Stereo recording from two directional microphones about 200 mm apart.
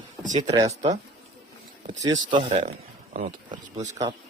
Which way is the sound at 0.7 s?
25° right (ahead or behind).